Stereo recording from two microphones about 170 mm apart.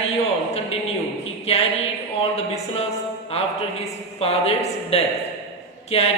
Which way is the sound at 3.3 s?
35° left (ahead or behind).